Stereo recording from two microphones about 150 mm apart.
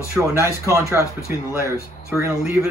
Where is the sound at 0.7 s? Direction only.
20° right (ahead or behind).